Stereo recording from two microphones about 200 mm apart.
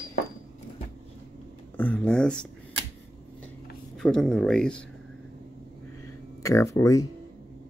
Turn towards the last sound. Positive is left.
turn(degrees=15)  # may be behind; listen again after turning